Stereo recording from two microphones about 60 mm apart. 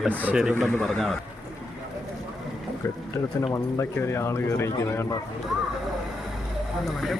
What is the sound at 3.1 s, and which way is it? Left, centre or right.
Speech, left.